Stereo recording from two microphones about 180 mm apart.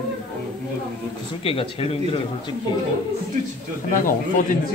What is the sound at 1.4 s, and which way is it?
Speech, 30° left (ahead or behind).